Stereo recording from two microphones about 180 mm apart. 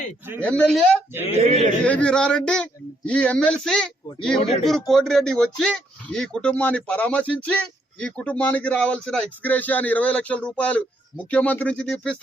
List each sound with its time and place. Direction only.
0.4 s speech: 5° left (ahead or behind)
1.4 s a man's voice: 35° right (ahead or behind)
1.8 s speech: 5° left (ahead or behind)